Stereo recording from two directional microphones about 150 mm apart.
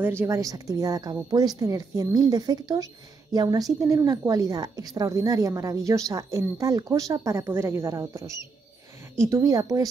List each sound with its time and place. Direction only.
0.0 s a woman's voice: 15° right (ahead or behind)